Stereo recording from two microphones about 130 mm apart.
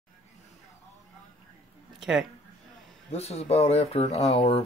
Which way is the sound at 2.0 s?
5° right (ahead or behind).